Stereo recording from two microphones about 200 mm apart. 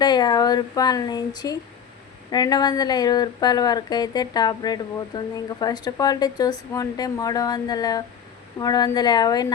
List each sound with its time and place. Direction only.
0.0 s speech: 20° left (ahead or behind)